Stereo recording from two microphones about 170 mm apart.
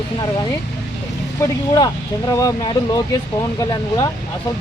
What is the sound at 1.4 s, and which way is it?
Speech, 20° left (ahead or behind).